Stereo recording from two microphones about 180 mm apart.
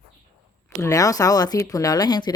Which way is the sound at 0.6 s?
15° left (ahead or behind).